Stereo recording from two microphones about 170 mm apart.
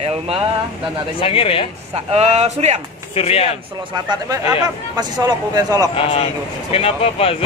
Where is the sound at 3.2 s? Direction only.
35° left (ahead or behind).